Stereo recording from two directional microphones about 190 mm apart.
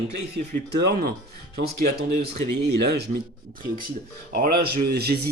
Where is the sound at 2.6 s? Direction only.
60° right (ahead or behind).